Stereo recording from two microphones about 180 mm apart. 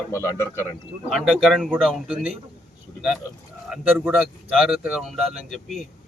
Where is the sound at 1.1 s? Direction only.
Centre (ahead or behind).